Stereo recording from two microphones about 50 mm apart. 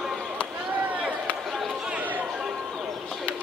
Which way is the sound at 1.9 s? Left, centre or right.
Right.